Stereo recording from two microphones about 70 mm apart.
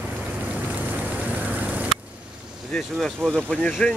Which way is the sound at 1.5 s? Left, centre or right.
Right.